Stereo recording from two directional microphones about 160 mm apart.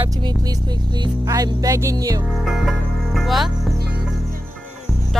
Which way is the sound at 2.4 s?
Centre (ahead or behind).